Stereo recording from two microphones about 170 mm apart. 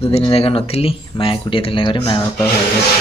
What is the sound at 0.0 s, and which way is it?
Speech, 35° left (ahead or behind).